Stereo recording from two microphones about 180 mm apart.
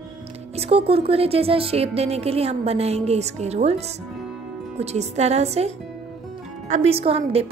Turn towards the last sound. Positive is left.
turn(degrees=-35)  # may be behind; listen again after turning